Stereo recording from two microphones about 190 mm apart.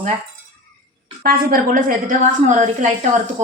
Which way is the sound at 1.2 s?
50° right (ahead or behind).